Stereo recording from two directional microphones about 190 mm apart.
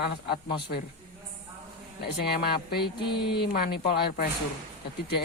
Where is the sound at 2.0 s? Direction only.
60° left (ahead or behind).